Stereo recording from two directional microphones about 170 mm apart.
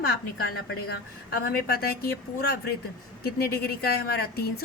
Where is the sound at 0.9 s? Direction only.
65° left (ahead or behind).